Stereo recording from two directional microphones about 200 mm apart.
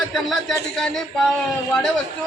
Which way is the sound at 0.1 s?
Centre (ahead or behind).